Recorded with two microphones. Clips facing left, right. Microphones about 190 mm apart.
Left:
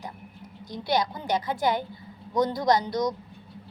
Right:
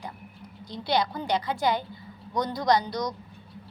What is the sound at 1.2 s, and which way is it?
Speech, 45° left (ahead or behind).